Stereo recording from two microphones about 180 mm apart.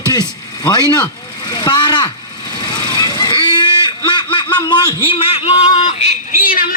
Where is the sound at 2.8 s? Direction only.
20° left (ahead or behind).